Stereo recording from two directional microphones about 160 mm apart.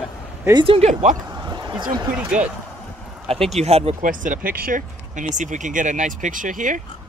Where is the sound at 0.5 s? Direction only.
35° right (ahead or behind).